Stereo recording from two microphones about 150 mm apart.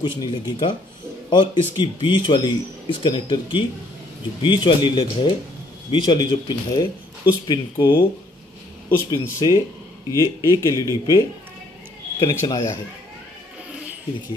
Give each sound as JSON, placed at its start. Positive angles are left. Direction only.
{"t": 0.2, "sound": "speech", "side_deg": 30}
{"t": 9.1, "sound": "speech", "side_deg": 25}